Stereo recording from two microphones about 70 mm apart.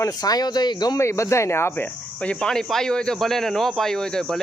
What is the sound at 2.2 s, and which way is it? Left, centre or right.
A man's voice, centre.